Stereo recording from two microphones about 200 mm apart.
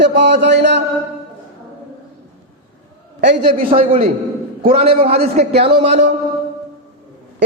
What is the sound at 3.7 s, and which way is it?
A man's voice, 30° right (ahead or behind).